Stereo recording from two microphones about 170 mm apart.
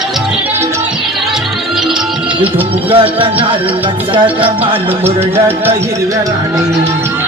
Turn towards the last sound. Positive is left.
turn(degrees=-15)  # may be behind; listen again after turning